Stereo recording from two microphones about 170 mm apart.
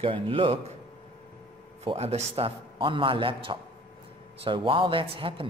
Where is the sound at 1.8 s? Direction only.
35° right (ahead or behind).